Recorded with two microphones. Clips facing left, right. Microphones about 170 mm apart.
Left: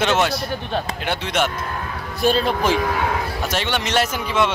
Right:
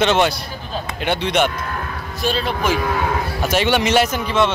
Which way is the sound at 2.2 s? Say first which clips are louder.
Left 3 dB; 50° left (ahead or behind).